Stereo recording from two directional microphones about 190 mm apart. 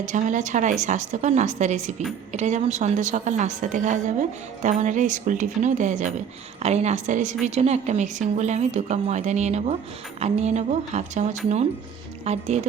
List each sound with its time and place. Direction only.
0.0 s a woman's voice: 40° right (ahead or behind)